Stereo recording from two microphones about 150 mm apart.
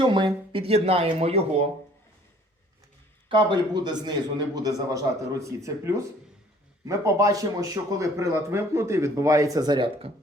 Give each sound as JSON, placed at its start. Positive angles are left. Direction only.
{"t": 0.0, "sound": "speech", "side_deg": -35}
{"t": 3.2, "sound": "speech", "side_deg": -30}